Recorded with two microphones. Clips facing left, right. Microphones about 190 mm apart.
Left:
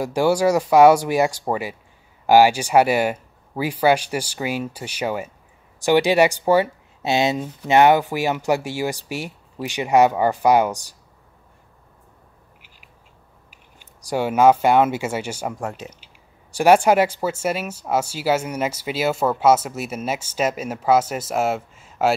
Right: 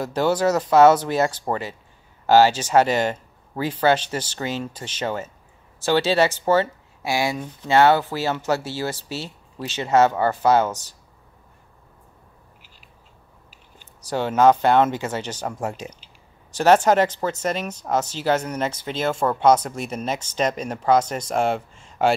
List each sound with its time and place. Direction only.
0.0 s speech: 10° left (ahead or behind)
13.5 s speech: 10° left (ahead or behind)
16.5 s speech: 10° left (ahead or behind)